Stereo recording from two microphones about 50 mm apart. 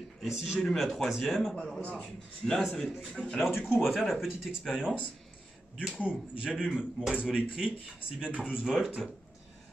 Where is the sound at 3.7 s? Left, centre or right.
Centre.